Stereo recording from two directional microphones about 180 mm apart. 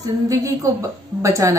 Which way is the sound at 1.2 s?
15° right (ahead or behind).